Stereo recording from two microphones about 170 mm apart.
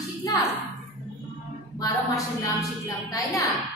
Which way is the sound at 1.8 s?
20° left (ahead or behind).